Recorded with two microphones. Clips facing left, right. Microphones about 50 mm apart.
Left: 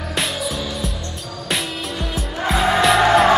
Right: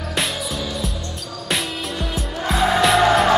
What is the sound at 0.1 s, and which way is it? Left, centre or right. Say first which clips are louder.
Music: left 1 dB; centre.